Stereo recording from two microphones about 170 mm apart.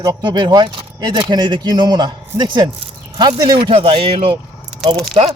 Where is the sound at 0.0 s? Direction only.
25° right (ahead or behind).